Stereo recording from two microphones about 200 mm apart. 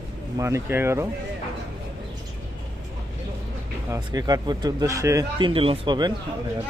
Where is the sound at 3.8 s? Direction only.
15° right (ahead or behind).